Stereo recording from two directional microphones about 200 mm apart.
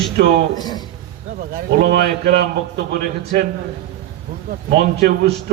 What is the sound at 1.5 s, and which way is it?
A man's voice, 45° right (ahead or behind).